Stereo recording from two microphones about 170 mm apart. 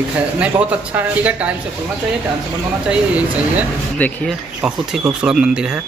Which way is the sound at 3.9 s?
10° left (ahead or behind).